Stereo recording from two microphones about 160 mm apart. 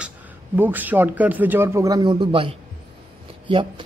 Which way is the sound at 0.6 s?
10° right (ahead or behind).